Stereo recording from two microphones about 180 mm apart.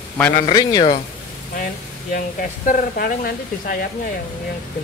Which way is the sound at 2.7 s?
55° left (ahead or behind).